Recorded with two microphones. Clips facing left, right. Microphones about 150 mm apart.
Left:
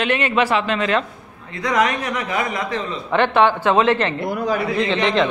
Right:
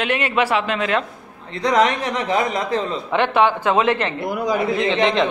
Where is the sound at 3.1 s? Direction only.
10° right (ahead or behind).